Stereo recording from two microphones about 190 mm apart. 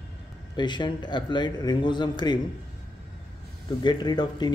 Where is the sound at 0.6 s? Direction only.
25° left (ahead or behind).